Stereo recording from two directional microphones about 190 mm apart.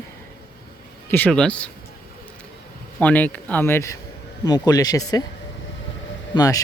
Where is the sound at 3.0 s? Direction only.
10° left (ahead or behind).